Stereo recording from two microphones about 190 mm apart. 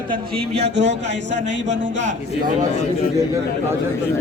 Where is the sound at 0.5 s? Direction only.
65° right (ahead or behind).